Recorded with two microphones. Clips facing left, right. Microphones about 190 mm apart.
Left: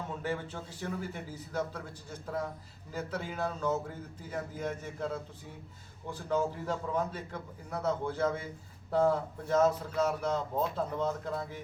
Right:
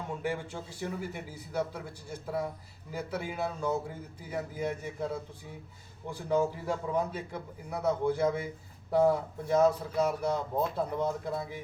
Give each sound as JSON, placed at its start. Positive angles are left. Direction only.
{"t": 0.2, "sound": "speech", "side_deg": -10}